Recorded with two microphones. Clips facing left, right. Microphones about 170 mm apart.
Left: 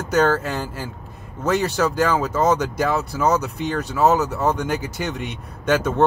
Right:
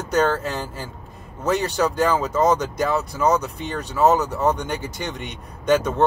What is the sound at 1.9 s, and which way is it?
Speech, 5° left (ahead or behind).